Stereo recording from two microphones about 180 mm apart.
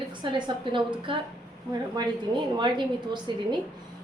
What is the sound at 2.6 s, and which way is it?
A woman's voice, 25° right (ahead or behind).